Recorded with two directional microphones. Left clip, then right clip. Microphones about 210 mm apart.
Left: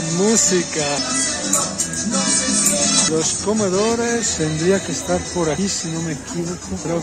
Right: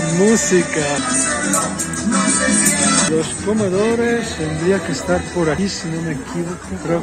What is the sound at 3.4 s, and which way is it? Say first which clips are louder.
Speech: right 2 dB; 25° left (ahead or behind).